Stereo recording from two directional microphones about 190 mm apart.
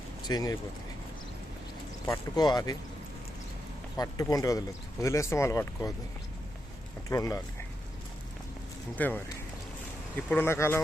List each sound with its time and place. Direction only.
0.3 s speech: 20° left (ahead or behind)
2.0 s speech: 20° left (ahead or behind)
3.9 s speech: 20° left (ahead or behind)
7.1 s speech: 15° left (ahead or behind)
9.0 s speech: 10° left (ahead or behind)
10.2 s speech: 10° left (ahead or behind)